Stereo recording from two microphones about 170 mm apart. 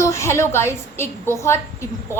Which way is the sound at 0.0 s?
15° left (ahead or behind).